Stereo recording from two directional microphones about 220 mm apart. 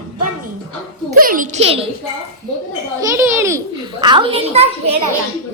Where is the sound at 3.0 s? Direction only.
10° right (ahead or behind); by 4.9 s 25° right (ahead or behind).